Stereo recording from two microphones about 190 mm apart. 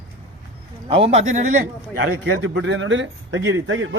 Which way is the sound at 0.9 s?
35° right (ahead or behind).